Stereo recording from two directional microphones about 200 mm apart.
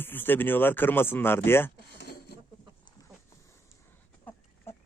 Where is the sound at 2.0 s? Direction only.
50° left (ahead or behind).